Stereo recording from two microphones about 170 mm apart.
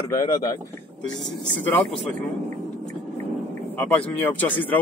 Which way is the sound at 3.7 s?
10° left (ahead or behind).